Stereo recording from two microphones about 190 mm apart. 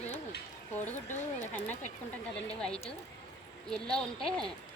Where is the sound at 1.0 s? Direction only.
40° left (ahead or behind).